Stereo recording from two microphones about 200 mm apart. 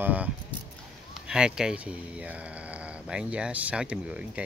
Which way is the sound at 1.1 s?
5° right (ahead or behind).